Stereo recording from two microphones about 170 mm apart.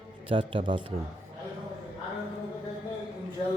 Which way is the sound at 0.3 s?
30° right (ahead or behind).